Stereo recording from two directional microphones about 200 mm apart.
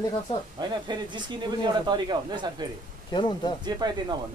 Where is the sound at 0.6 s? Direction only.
20° right (ahead or behind).